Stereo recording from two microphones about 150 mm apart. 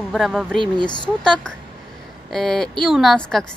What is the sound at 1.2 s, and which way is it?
A woman's voice, 5° left (ahead or behind).